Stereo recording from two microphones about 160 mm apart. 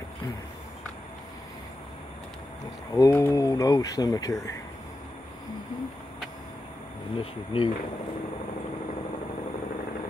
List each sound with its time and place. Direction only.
2.9 s speech: 20° left (ahead or behind)
7.2 s speech: 35° left (ahead or behind)